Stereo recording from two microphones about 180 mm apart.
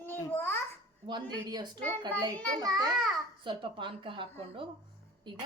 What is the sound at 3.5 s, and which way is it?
Speech, 30° right (ahead or behind).